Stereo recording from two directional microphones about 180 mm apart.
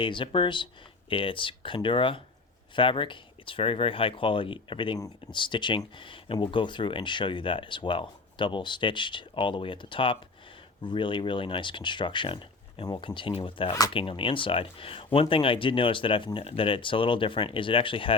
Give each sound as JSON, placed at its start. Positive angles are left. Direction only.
{"t": 0.0, "sound": "speech", "side_deg": 30}